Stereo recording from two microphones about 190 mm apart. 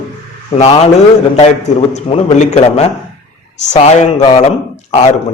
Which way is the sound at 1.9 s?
35° left (ahead or behind).